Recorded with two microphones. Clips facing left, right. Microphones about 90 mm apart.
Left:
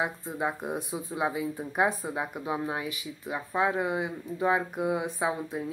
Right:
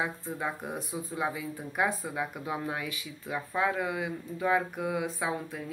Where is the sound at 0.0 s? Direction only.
20° left (ahead or behind).